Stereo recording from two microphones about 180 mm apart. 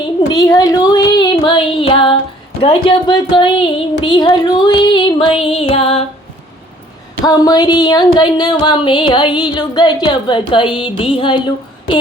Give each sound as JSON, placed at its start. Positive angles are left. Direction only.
{"t": 0.3, "sound": "speech", "side_deg": 20}
{"t": 2.6, "sound": "music", "side_deg": 30}
{"t": 7.3, "sound": "music", "side_deg": 20}